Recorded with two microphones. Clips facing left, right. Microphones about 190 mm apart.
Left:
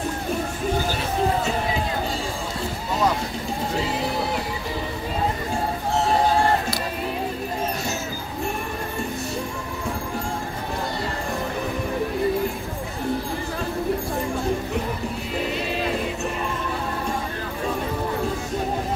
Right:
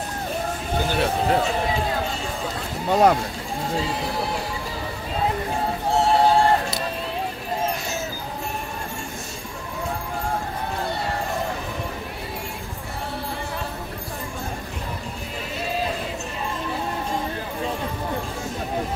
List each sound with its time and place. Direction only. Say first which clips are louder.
2.9 s speech: right 6 dB; 65° right (ahead or behind)